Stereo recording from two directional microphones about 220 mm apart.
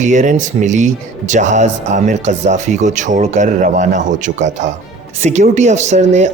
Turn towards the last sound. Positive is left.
turn(degrees=-30)  # may be behind; listen again after turning